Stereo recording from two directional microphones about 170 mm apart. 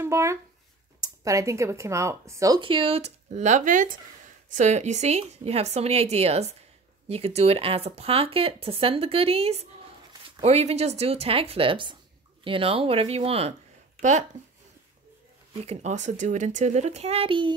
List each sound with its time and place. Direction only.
0.0 s speech: 15° right (ahead or behind); by 13.6 s 35° right (ahead or behind)
15.5 s speech: 40° right (ahead or behind)